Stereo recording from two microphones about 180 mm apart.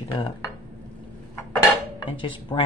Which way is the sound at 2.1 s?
25° left (ahead or behind).